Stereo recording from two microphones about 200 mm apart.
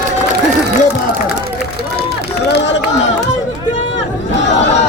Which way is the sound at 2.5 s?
60° left (ahead or behind).